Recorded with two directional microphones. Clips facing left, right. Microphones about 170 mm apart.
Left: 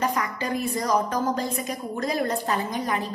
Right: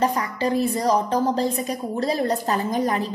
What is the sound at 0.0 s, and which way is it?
A woman's voice, 35° right (ahead or behind).